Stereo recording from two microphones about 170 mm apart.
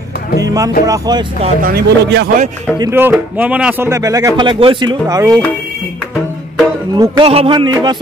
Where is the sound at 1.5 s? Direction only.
65° right (ahead or behind); by 2.3 s 80° right.